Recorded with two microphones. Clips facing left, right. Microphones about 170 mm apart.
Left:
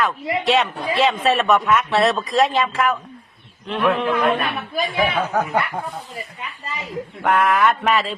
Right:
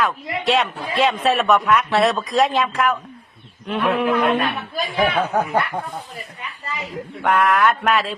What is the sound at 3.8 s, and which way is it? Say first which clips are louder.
Speech: even; 15° right (ahead or behind).